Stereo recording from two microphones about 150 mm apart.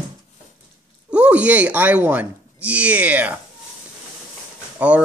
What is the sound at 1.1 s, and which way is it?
Speech, 10° right (ahead or behind).